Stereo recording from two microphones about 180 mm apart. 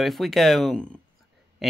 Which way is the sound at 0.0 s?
Centre (ahead or behind).